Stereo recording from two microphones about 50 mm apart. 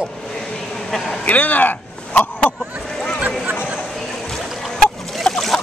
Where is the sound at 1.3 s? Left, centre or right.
Left.